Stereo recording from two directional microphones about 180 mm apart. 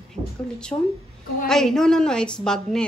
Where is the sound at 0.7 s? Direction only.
20° left (ahead or behind).